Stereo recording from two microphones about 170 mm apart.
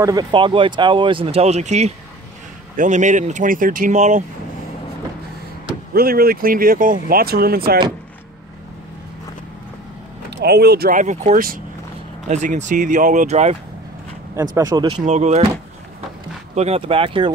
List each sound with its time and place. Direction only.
0.0 s speech: 25° right (ahead or behind); by 4.2 s 45° right (ahead or behind)
5.9 s speech: 60° right (ahead or behind)
10.3 s speech: 75° right (ahead or behind); by 13.6 s 40° right (ahead or behind)
14.3 s speech: 20° right (ahead or behind)
15.0 s speech: 40° right (ahead or behind)
16.5 s speech: 40° right (ahead or behind)